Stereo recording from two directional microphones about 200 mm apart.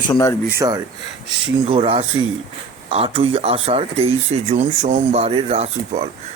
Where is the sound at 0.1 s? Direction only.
15° left (ahead or behind).